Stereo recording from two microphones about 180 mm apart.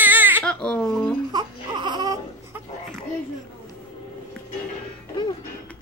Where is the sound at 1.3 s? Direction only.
25° right (ahead or behind).